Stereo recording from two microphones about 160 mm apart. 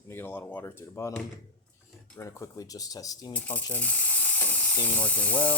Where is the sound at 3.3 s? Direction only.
10° left (ahead or behind).